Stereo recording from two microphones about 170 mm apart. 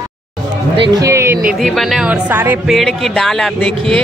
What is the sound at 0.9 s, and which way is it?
Speech, 20° right (ahead or behind).